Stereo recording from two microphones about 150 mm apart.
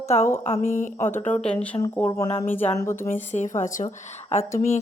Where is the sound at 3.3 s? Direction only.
55° left (ahead or behind).